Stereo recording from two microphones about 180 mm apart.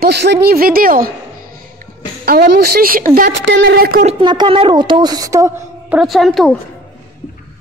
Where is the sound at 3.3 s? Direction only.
65° right (ahead or behind).